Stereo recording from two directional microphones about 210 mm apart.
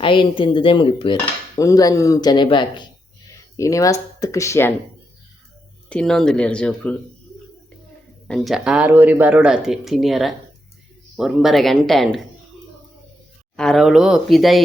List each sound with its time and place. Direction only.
0.0 s cutlery: 25° left (ahead or behind)
1.2 s dishes: 15° left (ahead or behind)
5.9 s speech: 5° left (ahead or behind)
8.3 s speech: centre (ahead or behind)
13.6 s speech: centre (ahead or behind)